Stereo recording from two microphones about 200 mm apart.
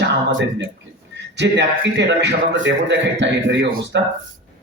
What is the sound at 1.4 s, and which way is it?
A man's voice, 60° right (ahead or behind).